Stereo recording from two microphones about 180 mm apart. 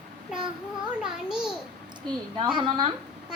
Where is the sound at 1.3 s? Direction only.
5° right (ahead or behind).